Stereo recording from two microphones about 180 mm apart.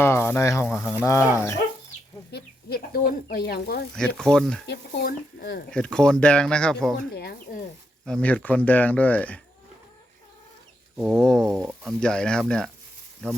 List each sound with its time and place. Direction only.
0.0 s speech: 15° left (ahead or behind)
0.7 s speech: 5° left (ahead or behind)
2.3 s speech: 60° left (ahead or behind)
3.9 s speech: 5° left (ahead or behind)
4.6 s speech: 65° left (ahead or behind)
5.7 s speech: 5° left (ahead or behind)
7.1 s speech: 60° left (ahead or behind)
8.0 s speech: 5° left (ahead or behind)
11.2 s speech: centre (ahead or behind)